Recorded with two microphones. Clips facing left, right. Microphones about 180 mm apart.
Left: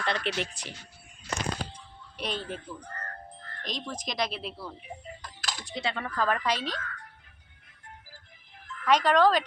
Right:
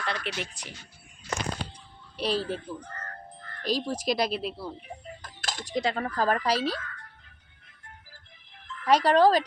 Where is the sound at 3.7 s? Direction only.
35° right (ahead or behind).